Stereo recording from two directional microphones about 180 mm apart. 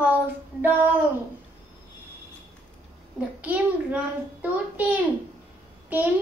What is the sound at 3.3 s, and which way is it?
A child's voice, 5° right (ahead or behind).